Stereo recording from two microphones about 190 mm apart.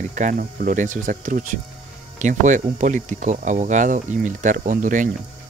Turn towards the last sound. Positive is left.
turn(degrees=-45)  # may be behind; listen again after turning